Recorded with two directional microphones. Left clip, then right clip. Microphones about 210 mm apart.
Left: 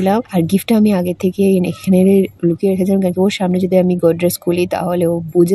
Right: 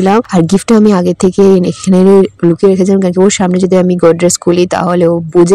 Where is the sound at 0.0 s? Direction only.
35° right (ahead or behind).